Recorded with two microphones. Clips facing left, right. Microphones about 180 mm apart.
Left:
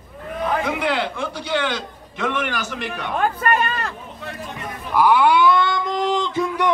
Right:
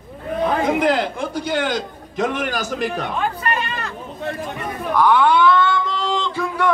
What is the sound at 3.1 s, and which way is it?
Speech, 50° left (ahead or behind).